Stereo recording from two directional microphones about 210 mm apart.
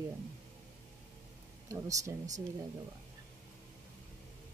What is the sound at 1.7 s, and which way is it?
Speech, 15° right (ahead or behind).